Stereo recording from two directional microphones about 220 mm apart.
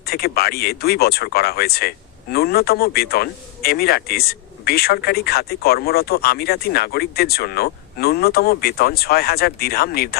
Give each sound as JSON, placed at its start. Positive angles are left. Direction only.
{"t": 0.1, "sound": "speech", "side_deg": 45}